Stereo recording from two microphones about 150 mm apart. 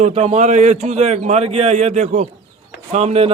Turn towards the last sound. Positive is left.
turn(degrees=-45)  # may be behind; listen again after turning